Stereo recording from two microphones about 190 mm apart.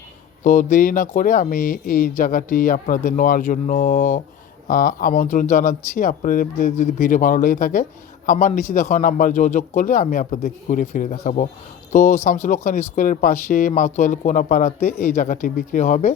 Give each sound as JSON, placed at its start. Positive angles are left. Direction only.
{"t": 0.4, "sound": "speech", "side_deg": 40}